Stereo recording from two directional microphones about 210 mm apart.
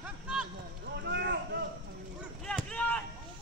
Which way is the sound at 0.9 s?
55° right (ahead or behind).